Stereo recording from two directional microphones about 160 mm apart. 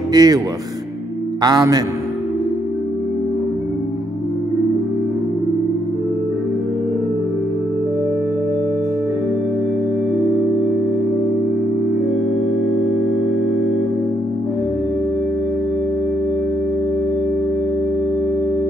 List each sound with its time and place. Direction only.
0.1 s speech: 25° right (ahead or behind)
1.4 s a man's voice: 25° right (ahead or behind)